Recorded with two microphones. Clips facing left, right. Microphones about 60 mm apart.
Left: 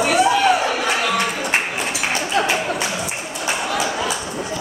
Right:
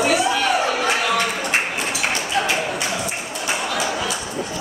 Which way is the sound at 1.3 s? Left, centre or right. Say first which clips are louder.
Left 1 dB; centre.